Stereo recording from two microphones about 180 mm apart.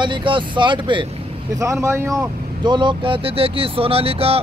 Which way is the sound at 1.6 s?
15° right (ahead or behind).